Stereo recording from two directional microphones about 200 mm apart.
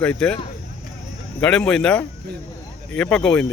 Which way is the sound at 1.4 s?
5° left (ahead or behind).